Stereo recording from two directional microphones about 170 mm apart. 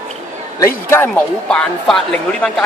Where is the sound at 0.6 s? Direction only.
15° left (ahead or behind).